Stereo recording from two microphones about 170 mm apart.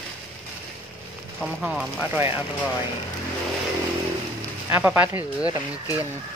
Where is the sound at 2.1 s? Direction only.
15° right (ahead or behind).